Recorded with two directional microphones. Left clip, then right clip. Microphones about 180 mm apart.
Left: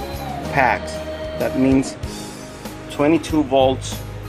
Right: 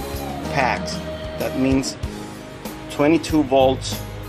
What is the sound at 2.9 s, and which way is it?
Speech, 15° left (ahead or behind).